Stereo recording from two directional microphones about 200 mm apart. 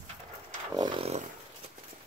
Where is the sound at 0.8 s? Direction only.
25° right (ahead or behind).